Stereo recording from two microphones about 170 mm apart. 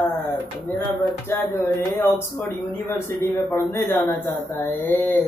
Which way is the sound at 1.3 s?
15° left (ahead or behind).